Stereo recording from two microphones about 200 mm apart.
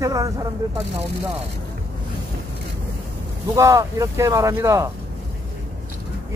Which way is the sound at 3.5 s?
15° right (ahead or behind).